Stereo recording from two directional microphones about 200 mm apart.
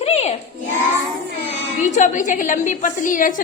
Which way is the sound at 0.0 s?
30° left (ahead or behind).